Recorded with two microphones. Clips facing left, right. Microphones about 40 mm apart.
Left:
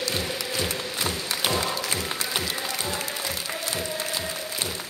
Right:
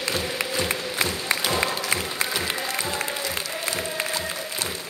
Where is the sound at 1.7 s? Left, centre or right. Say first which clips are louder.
Right 3 dB; right.